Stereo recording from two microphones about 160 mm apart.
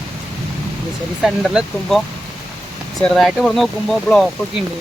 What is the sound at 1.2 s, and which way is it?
Speech, 5° right (ahead or behind).